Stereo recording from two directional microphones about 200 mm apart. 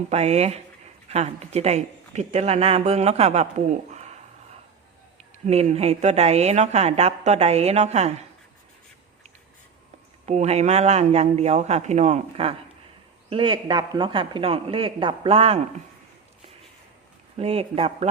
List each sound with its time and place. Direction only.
0.1 s speech: 35° right (ahead or behind)
5.5 s speech: 30° right (ahead or behind)
10.2 s speech: 35° right (ahead or behind)
17.3 s speech: 30° right (ahead or behind)